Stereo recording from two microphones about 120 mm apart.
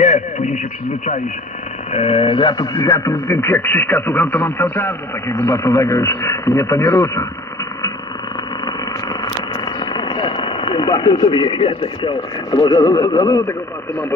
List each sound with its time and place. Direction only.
0.0 s radio: 80° left
1.9 s speech: 60° left (ahead or behind); by 7.2 s 25° left (ahead or behind)
9.8 s speech: 40° left (ahead or behind)